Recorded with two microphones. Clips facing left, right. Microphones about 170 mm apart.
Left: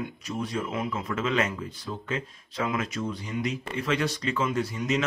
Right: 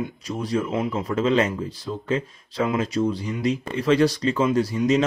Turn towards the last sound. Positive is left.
turn(degrees=-35)  # may be behind; listen again after turning